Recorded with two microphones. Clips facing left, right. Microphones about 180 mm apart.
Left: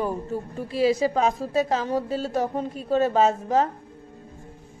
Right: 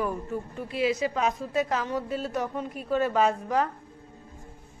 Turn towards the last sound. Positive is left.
turn(degrees=25)  # may be behind; listen again after turning